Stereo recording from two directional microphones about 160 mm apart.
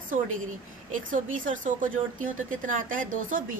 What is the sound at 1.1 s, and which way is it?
A woman's voice, 55° right (ahead or behind).